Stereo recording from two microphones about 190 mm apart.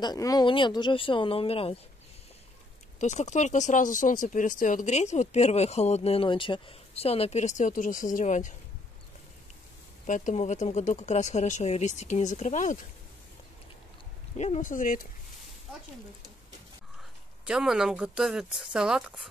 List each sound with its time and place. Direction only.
0.0 s speech: 20° left (ahead or behind)
3.0 s speech: 40° left (ahead or behind)
10.0 s speech: 40° left (ahead or behind)
14.3 s speech: 35° left (ahead or behind)
17.5 s speech: 5° right (ahead or behind)